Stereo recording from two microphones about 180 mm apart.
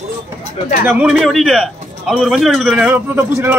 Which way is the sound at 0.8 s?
10° right (ahead or behind).